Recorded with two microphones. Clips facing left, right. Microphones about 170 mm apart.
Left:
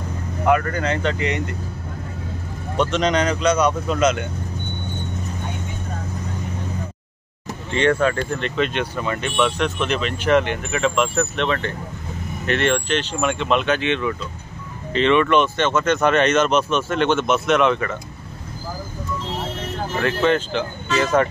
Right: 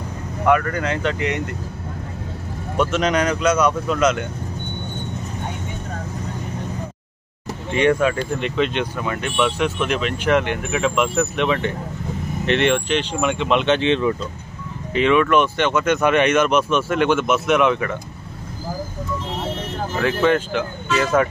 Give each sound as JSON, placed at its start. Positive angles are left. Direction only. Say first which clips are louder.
{"t": 0.5, "sound": "speech", "louder": "right 1 dB", "side_deg": -5}
{"t": 2.8, "sound": "speech", "louder": "even", "side_deg": -5}
{"t": 3.9, "sound": "speech", "louder": "even", "side_deg": 20}
{"t": 7.7, "sound": "speech", "louder": "right 1 dB", "side_deg": -15}
{"t": 13.7, "sound": "speech", "louder": "right 3 dB", "side_deg": -30}
{"t": 15.0, "sound": "speech", "louder": "even", "side_deg": -5}
{"t": 20.2, "sound": "speech", "louder": "right 1 dB", "side_deg": -10}